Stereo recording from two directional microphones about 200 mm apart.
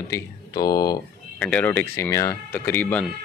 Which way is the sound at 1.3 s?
5° left (ahead or behind).